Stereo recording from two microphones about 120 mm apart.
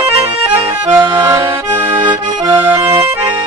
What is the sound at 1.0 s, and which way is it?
Accordion, 35° right (ahead or behind).